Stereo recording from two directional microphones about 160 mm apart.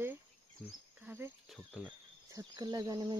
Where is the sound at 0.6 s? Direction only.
5° right (ahead or behind).